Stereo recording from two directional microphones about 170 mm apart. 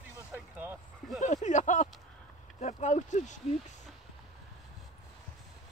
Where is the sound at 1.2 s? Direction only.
45° left (ahead or behind).